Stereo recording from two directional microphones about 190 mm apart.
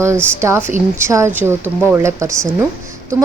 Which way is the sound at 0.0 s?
15° right (ahead or behind).